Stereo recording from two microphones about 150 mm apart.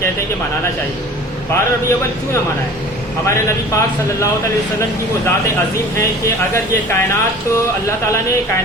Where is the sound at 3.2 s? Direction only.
20° left (ahead or behind).